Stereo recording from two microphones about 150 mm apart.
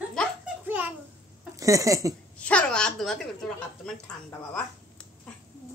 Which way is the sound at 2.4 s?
10° left (ahead or behind).